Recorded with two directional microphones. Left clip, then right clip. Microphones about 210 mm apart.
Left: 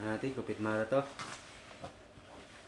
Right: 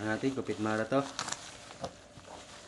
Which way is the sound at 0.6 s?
35° right (ahead or behind).